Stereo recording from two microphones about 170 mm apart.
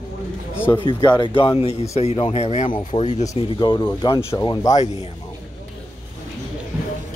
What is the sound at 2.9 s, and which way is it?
Speech, 25° left (ahead or behind).